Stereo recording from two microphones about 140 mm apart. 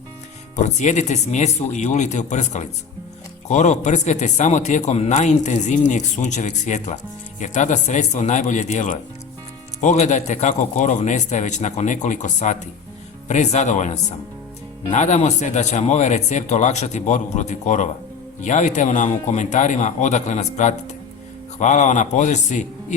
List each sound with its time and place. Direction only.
0.5 s a man's voice: 60° left (ahead or behind)